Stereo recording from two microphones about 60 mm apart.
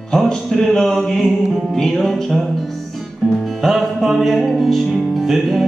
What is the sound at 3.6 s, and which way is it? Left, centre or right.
Music, centre.